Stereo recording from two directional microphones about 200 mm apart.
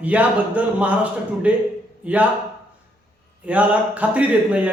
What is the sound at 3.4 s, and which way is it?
Speech, 5° right (ahead or behind).